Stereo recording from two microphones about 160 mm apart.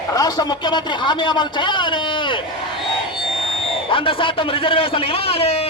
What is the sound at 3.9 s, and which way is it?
A man's voice, 35° left (ahead or behind).